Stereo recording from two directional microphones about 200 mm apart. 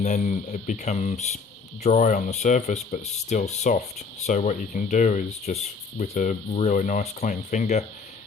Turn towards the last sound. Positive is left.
turn(degrees=35)  # may be behind; listen again after turning